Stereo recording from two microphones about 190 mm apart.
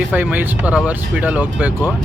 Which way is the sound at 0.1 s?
10° right (ahead or behind).